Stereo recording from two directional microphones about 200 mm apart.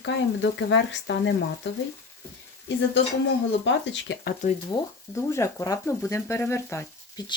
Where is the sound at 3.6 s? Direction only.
65° left (ahead or behind).